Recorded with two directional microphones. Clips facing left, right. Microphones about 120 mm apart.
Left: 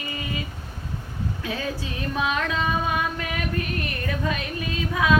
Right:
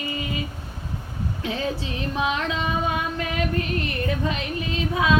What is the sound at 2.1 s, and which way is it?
Music, 25° right (ahead or behind).